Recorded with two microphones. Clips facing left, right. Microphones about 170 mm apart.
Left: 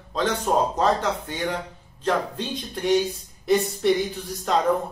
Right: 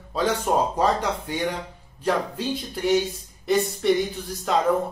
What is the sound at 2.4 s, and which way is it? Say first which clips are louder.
Speech: right 2 dB; 10° right (ahead or behind).